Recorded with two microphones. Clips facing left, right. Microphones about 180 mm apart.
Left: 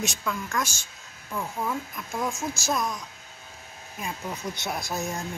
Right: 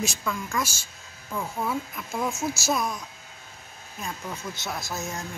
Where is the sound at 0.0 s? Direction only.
Centre (ahead or behind).